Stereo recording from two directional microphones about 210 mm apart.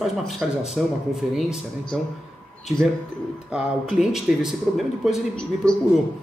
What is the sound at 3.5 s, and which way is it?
Speech, centre (ahead or behind).